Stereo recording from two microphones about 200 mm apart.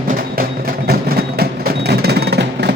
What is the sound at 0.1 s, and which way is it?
Music, 45° right (ahead or behind).